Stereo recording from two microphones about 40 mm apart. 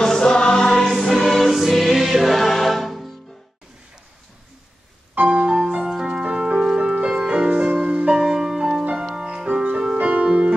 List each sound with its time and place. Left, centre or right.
0.0 s choir: centre
0.8 s music: centre
5.2 s music: right
5.9 s music: centre
7.1 s music: centre
7.3 s music: right
8.1 s music: centre
9.5 s music: right